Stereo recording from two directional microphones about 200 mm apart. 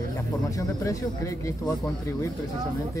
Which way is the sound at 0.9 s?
15° left (ahead or behind).